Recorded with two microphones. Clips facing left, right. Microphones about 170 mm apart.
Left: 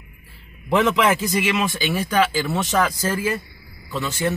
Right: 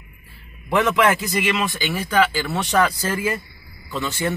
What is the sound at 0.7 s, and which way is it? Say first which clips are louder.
Speech: even; 15° left (ahead or behind).